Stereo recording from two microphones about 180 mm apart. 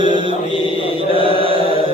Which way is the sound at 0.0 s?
25° right (ahead or behind).